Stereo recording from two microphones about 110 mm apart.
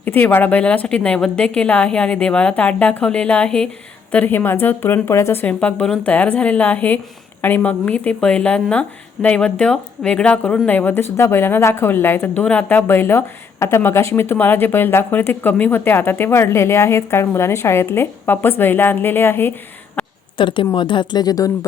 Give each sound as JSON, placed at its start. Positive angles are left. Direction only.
{"t": 0.0, "sound": "a woman's voice", "side_deg": 15}
{"t": 20.3, "sound": "speech", "side_deg": 50}